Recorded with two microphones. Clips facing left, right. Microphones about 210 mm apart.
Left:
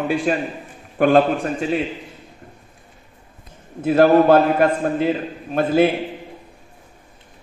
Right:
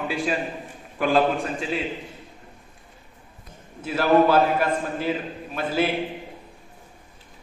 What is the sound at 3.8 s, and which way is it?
A man's voice, 55° left (ahead or behind).